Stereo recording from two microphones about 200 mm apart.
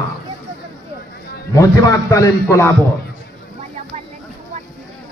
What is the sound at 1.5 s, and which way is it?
A man's voice, 15° left (ahead or behind).